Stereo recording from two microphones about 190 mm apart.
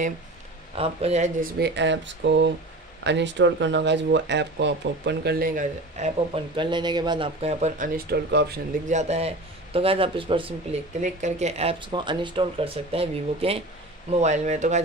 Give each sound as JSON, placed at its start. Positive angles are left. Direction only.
{"t": 0.7, "sound": "speech", "side_deg": -30}
{"t": 1.6, "sound": "speech", "side_deg": -70}
{"t": 5.9, "sound": "speech", "side_deg": -30}
{"t": 8.1, "sound": "speech", "side_deg": -60}
{"t": 8.8, "sound": "speech", "side_deg": -35}
{"t": 11.0, "sound": "speech", "side_deg": -40}